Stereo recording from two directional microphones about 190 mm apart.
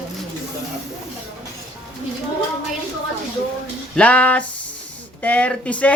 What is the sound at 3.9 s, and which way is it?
Speech, 5° left (ahead or behind).